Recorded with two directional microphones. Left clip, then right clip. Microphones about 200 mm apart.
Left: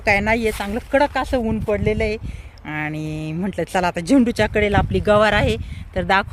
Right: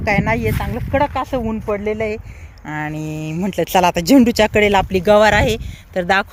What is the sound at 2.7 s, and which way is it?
Speech, 20° right (ahead or behind).